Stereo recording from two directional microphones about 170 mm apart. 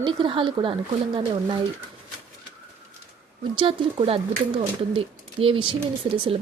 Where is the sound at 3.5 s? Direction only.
30° right (ahead or behind).